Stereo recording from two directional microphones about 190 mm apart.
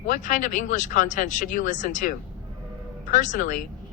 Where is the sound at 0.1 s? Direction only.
40° left (ahead or behind).